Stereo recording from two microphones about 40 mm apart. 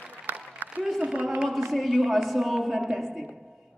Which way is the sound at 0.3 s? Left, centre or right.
Right.